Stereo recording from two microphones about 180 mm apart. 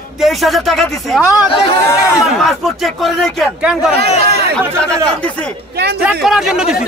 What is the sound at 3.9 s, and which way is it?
Speech, 35° left (ahead or behind).